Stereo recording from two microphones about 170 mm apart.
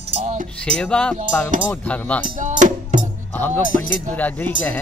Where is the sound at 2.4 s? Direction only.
45° right (ahead or behind).